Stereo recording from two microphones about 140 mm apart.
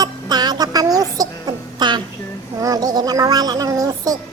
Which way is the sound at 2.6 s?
25° right (ahead or behind).